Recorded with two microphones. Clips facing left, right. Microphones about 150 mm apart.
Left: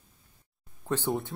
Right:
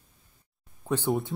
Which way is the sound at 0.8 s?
10° right (ahead or behind).